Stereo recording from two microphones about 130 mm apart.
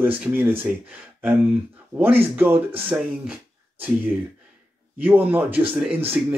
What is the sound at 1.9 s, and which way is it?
Speech, 15° right (ahead or behind).